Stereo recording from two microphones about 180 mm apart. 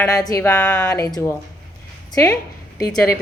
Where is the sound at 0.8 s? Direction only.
20° left (ahead or behind).